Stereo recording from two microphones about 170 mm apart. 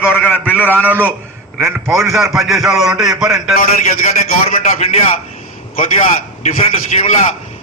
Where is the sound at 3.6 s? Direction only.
40° left (ahead or behind).